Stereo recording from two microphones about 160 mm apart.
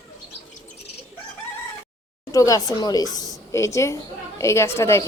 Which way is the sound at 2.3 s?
20° left (ahead or behind).